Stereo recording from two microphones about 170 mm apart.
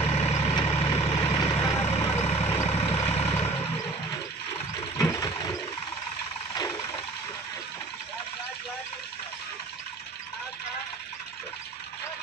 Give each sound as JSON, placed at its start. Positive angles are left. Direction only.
{"t": 0.0, "sound": "vehicle", "side_deg": 35}
{"t": 1.2, "sound": "vehicle", "side_deg": 20}
{"t": 1.8, "sound": "vehicle", "side_deg": 35}
{"t": 4.9, "sound": "a sound", "side_deg": 20}